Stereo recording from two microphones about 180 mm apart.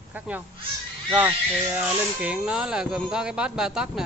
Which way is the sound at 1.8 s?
5° right (ahead or behind).